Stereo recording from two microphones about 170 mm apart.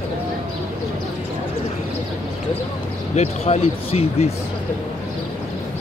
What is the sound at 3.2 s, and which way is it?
Speech, 40° left (ahead or behind).